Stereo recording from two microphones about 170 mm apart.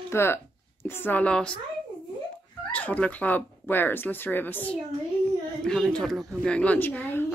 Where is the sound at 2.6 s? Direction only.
10° left (ahead or behind).